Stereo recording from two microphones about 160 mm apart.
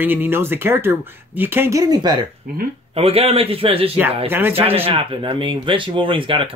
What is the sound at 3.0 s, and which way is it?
Speech, 40° right (ahead or behind).